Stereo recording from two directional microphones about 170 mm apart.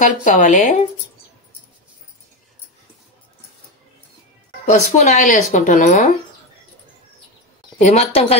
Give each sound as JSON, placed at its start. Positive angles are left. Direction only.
{"t": 0.0, "sound": "speech", "side_deg": 50}
{"t": 4.6, "sound": "speech", "side_deg": 45}
{"t": 7.8, "sound": "speech", "side_deg": 40}